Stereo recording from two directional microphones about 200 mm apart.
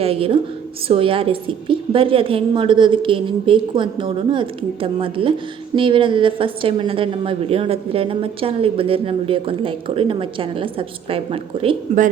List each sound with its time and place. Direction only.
0.0 s a woman's voice: 30° right (ahead or behind)